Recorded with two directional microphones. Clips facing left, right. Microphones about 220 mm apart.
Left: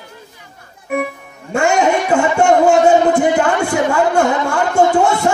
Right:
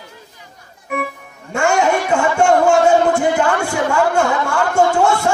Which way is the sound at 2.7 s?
20° left (ahead or behind).